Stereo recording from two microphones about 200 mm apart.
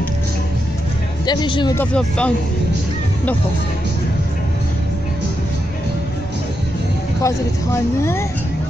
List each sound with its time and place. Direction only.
1.2 s speech: 20° left (ahead or behind)
1.8 s speech: 5° left (ahead or behind)
7.2 s speech: 15° left (ahead or behind)